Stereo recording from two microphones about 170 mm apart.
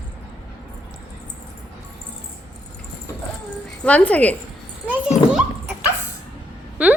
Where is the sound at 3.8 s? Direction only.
5° left (ahead or behind).